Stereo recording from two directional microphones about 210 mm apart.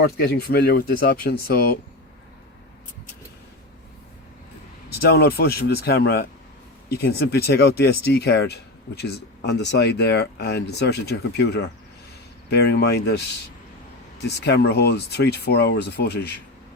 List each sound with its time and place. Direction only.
0.0 s speech: 50° left (ahead or behind)
4.9 s speech: 50° left (ahead or behind)
14.3 s speech: 50° left (ahead or behind)